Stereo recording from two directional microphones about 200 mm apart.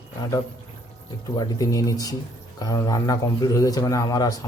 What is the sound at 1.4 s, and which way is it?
Speech, 15° left (ahead or behind).